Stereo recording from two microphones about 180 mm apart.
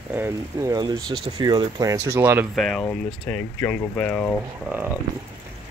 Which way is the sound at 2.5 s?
Centre (ahead or behind).